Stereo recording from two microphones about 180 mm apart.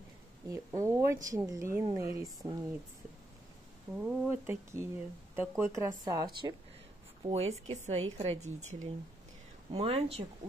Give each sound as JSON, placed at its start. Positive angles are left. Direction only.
{"t": 0.5, "sound": "speech", "side_deg": -15}
{"t": 3.9, "sound": "speech", "side_deg": -10}
{"t": 7.2, "sound": "a woman's voice", "side_deg": -35}
{"t": 9.7, "sound": "a woman's voice", "side_deg": -30}